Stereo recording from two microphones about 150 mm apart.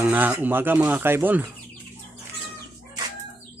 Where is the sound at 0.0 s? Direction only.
10° right (ahead or behind).